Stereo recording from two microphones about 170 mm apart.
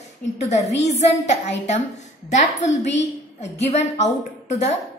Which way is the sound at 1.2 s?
40° left (ahead or behind).